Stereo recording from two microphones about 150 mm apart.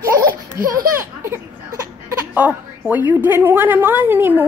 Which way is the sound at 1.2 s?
15° right (ahead or behind).